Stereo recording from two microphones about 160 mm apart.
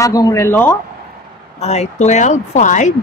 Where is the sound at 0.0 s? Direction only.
20° left (ahead or behind).